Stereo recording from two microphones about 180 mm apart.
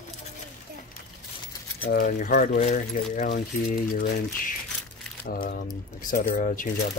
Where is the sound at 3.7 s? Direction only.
50° left (ahead or behind).